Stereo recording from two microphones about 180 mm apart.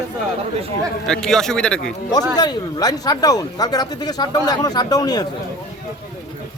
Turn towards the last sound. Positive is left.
turn(degrees=20)  # may be behind; listen again after turning